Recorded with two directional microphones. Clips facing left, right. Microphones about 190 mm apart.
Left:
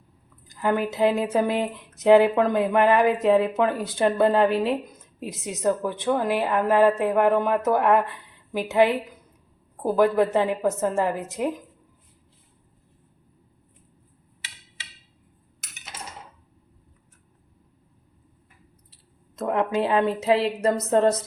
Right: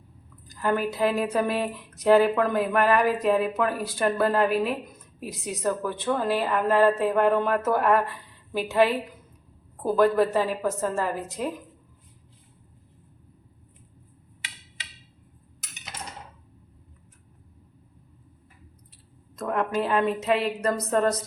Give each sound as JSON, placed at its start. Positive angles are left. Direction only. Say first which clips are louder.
{"t": 0.4, "sound": "a woman's voice", "louder": "left 1 dB", "side_deg": 20}
{"t": 19.4, "sound": "speech", "louder": "left 3 dB", "side_deg": 25}